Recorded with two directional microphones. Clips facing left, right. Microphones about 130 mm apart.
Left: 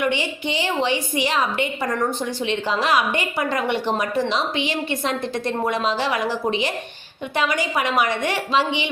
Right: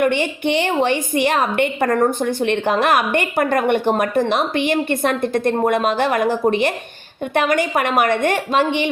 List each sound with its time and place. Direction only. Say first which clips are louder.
0.0 s a woman's voice: right 5 dB; 55° right (ahead or behind)